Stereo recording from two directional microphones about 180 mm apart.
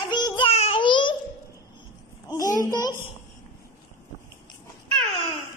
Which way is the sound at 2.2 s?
20° left (ahead or behind).